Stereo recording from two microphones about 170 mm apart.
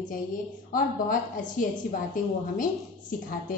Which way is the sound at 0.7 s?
55° left (ahead or behind).